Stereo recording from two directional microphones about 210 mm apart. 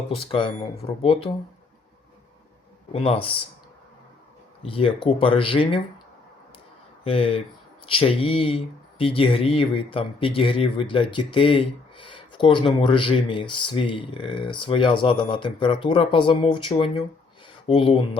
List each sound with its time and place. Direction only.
0.1 s speech: 25° left (ahead or behind)
2.9 s speech: 25° left (ahead or behind)
4.6 s speech: 25° left (ahead or behind)
7.0 s speech: 25° left (ahead or behind)